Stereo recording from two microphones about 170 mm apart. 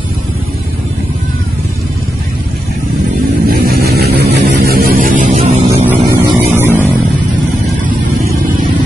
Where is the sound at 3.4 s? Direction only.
60° right (ahead or behind); by 5.8 s 40° right (ahead or behind).